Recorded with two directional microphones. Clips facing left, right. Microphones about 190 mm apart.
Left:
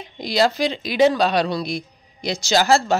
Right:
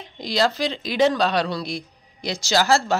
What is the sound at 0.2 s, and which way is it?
Speech, 10° left (ahead or behind).